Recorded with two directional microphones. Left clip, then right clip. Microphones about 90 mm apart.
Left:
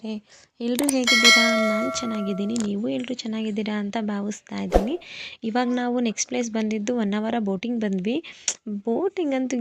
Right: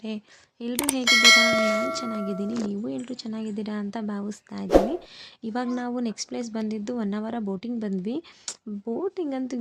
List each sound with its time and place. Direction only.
0.6 s speech: 85° left
1.0 s bell: centre (ahead or behind)
1.9 s speech: 15° left (ahead or behind)
2.6 s a woman's voice: 25° left (ahead or behind)
8.8 s speech: 35° left (ahead or behind)
9.1 s a woman's voice: 20° left (ahead or behind)